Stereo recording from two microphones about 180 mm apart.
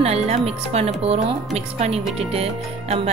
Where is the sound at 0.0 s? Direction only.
35° right (ahead or behind).